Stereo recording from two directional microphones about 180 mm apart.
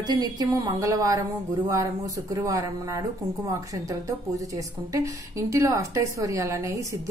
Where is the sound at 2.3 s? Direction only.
20° right (ahead or behind).